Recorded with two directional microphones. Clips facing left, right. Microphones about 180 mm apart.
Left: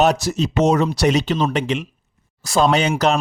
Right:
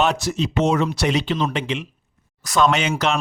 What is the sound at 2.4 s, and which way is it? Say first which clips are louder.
Speech: left 2 dB; 30° left (ahead or behind).